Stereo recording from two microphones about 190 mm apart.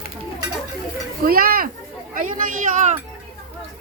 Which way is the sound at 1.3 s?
50° right (ahead or behind).